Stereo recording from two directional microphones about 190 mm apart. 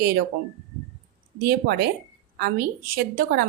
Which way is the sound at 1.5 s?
55° right (ahead or behind).